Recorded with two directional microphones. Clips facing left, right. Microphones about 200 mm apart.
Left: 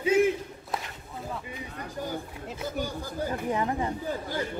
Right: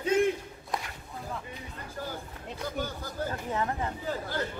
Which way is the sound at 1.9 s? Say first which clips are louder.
Left 4 dB; 15° left (ahead or behind).